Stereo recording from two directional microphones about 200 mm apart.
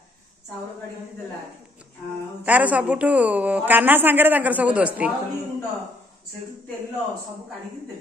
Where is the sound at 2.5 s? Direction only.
5° right (ahead or behind).